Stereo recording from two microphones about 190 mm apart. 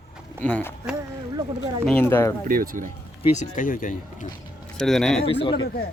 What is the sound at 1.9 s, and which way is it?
Speech, 10° left (ahead or behind).